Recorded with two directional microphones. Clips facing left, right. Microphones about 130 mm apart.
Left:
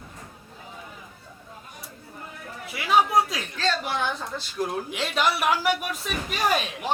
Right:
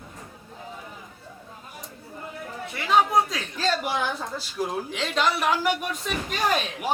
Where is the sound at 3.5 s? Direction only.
10° right (ahead or behind).